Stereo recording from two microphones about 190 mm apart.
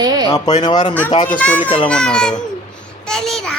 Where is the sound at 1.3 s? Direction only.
10° left (ahead or behind).